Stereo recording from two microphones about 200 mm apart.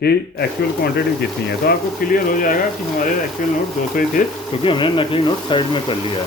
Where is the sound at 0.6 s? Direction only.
55° left (ahead or behind).